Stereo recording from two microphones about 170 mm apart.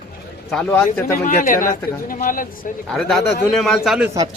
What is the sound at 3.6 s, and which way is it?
Speech, centre (ahead or behind).